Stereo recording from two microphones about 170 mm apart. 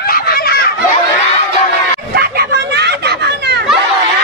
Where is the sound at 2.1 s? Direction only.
70° right (ahead or behind).